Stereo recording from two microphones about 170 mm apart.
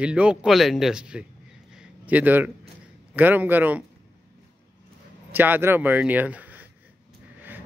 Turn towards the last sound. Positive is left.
turn(degrees=-10)  # may be behind; listen again after turning